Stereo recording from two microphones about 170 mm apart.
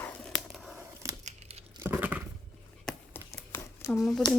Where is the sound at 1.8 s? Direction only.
10° right (ahead or behind).